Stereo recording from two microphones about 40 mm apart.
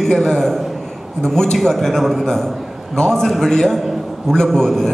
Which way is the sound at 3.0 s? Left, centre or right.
Centre.